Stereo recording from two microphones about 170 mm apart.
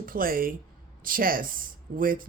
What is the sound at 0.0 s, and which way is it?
Speech, 55° right (ahead or behind).